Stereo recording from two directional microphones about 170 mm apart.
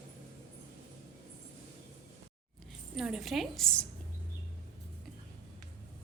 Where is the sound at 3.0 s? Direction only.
Centre (ahead or behind).